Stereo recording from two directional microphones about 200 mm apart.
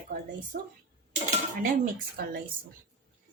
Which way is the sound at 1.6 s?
45° right (ahead or behind).